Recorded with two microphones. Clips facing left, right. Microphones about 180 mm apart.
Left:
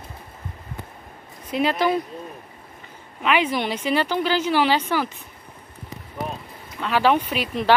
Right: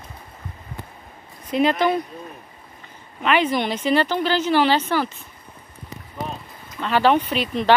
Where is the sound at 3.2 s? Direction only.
5° left (ahead or behind).